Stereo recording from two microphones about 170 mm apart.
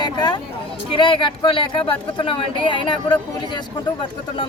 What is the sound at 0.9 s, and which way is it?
Speech, 30° left (ahead or behind).